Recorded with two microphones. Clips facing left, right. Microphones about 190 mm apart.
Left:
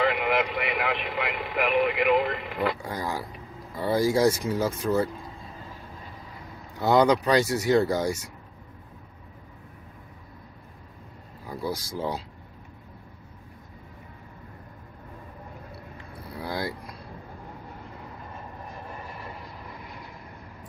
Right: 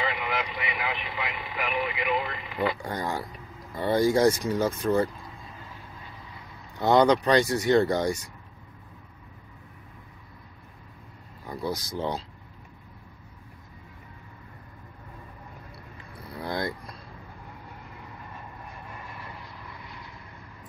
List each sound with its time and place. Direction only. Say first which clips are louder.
0.0 s speech: left 6 dB; 60° left (ahead or behind)
2.8 s speech: even; 5° left (ahead or behind)
6.8 s speech: even; 5° left (ahead or behind)
11.4 s speech: even; 5° left (ahead or behind)
16.4 s vehicle: right 1 dB; 5° left (ahead or behind)
18.9 s vehicle: left 3 dB; 40° left (ahead or behind)